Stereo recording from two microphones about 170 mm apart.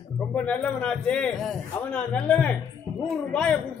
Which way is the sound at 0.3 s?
10° left (ahead or behind).